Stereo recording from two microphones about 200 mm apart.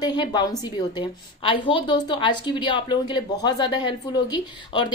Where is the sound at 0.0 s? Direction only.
20° left (ahead or behind).